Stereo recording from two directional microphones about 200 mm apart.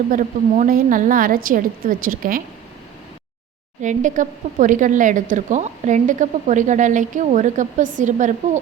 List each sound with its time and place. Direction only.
0.1 s a woman's voice: 40° right (ahead or behind)
3.8 s speech: 40° right (ahead or behind)